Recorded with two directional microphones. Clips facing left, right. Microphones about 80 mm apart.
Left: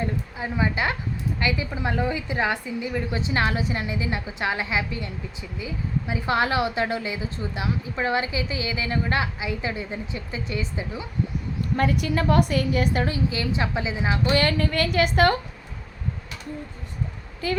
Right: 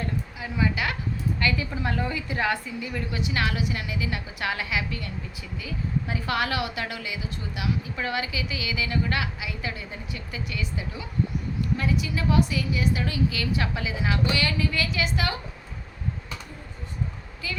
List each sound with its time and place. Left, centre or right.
0.3 s a woman's voice: left
11.8 s a woman's voice: left
13.1 s a woman's voice: left
14.3 s a woman's voice: left
17.4 s a woman's voice: left